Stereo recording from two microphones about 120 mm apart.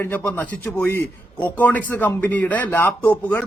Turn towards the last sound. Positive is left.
turn(degrees=15)  # may be behind; listen again after turning